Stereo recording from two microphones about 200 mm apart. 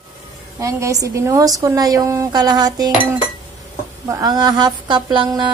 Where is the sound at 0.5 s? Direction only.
15° right (ahead or behind).